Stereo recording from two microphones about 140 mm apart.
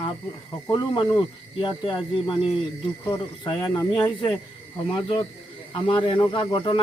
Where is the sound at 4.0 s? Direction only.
35° left (ahead or behind).